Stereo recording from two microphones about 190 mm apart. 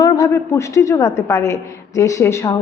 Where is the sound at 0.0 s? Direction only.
15° left (ahead or behind).